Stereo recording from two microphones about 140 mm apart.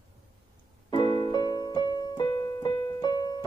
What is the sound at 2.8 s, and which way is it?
Music, 30° left (ahead or behind).